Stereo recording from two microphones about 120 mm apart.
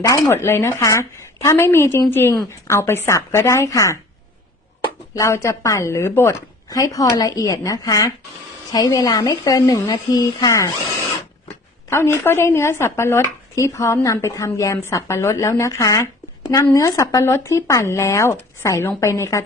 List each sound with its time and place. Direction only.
0.0 s speech: 25° left (ahead or behind)
5.1 s speech: 25° left (ahead or behind)
11.9 s speech: 20° left (ahead or behind)